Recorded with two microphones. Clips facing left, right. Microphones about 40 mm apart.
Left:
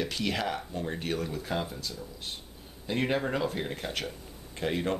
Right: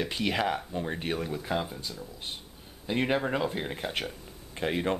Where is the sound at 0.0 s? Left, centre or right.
Centre.